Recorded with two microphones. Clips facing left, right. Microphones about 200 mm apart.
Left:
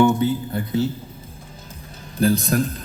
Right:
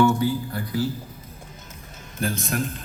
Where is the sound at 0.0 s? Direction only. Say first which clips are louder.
Left 3 dB; 20° left (ahead or behind).